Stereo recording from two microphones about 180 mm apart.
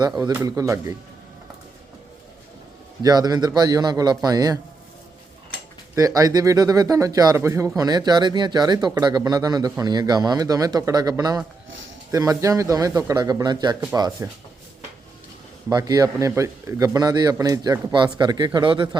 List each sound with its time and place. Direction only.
0.2 s speech: 20° right (ahead or behind)
3.0 s speech: 20° right (ahead or behind)
5.9 s speech: 20° right (ahead or behind)
15.7 s speech: 20° right (ahead or behind)